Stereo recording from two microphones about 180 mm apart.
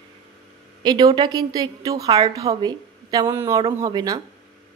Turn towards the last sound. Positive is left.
turn(degrees=-25)  # may be behind; listen again after turning